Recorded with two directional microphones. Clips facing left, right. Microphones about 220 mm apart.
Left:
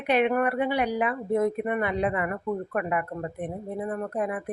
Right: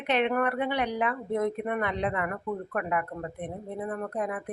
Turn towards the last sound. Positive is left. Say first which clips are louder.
# left 3 dB
turn(degrees=10)  # may be behind; listen again after turning